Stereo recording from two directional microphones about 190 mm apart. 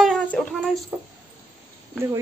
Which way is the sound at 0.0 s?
Centre (ahead or behind).